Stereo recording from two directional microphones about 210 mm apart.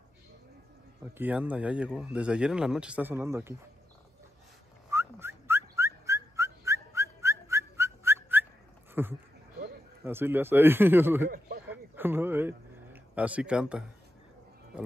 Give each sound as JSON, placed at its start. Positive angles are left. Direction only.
{"t": 1.1, "sound": "speech", "side_deg": -10}
{"t": 4.9, "sound": "whistling", "side_deg": -10}
{"t": 9.0, "sound": "speech", "side_deg": -10}
{"t": 11.2, "sound": "speech", "side_deg": -40}
{"t": 11.7, "sound": "a sound", "side_deg": -10}